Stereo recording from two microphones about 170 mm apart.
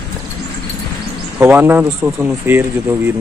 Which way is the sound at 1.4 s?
10° right (ahead or behind).